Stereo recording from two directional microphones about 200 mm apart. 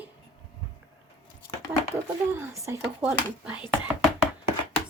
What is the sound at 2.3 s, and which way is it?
A child's voice, 15° right (ahead or behind).